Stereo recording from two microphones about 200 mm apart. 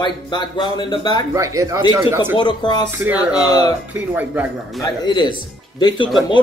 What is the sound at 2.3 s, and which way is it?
Speech, 20° left (ahead or behind).